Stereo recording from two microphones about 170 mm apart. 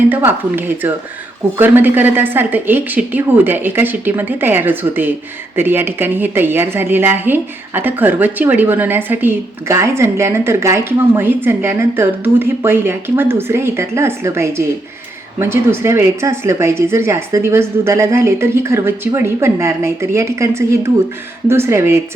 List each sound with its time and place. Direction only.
0.1 s a woman's voice: 10° right (ahead or behind)